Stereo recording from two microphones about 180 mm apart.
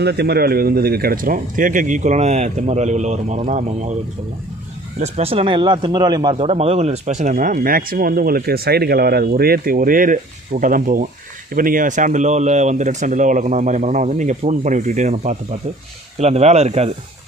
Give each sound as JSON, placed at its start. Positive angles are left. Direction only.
{"t": 0.0, "sound": "speech", "side_deg": -65}
{"t": 4.9, "sound": "speech", "side_deg": -40}
{"t": 6.3, "sound": "speech", "side_deg": -35}